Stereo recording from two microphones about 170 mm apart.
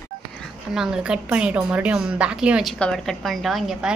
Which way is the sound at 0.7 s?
5° right (ahead or behind).